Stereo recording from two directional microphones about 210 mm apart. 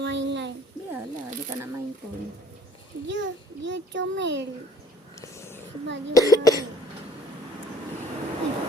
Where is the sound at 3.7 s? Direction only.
60° right (ahead or behind).